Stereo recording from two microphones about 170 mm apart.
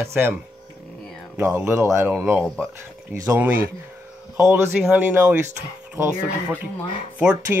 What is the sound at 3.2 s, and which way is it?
Speech, 10° right (ahead or behind).